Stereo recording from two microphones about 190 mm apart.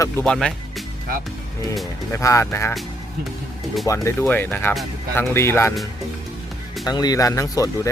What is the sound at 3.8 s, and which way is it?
Speech, 15° left (ahead or behind).